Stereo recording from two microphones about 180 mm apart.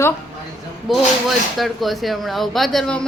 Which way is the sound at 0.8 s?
Centre (ahead or behind).